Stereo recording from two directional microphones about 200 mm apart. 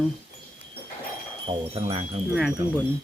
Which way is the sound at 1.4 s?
30° right (ahead or behind).